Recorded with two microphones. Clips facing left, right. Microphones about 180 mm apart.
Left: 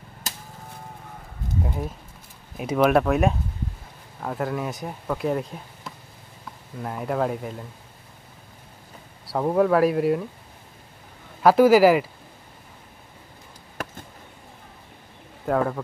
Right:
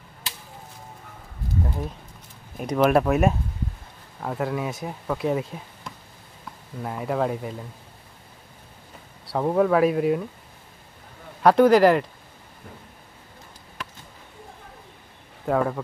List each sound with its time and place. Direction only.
0.3 s a sound: 45° left (ahead or behind)
2.5 s speech: centre (ahead or behind)
9.2 s speech: centre (ahead or behind)
11.4 s speech: 5° left (ahead or behind)
13.8 s a sound: 50° left (ahead or behind)
15.4 s speech: centre (ahead or behind)